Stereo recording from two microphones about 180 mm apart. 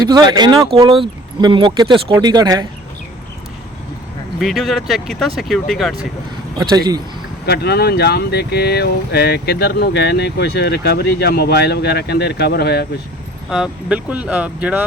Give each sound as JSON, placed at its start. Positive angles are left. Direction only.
{"t": 0.1, "sound": "speech", "side_deg": -25}
{"t": 4.4, "sound": "speech", "side_deg": 0}
{"t": 6.6, "sound": "speech", "side_deg": -20}
{"t": 7.4, "sound": "speech", "side_deg": 65}
{"t": 13.5, "sound": "speech", "side_deg": -5}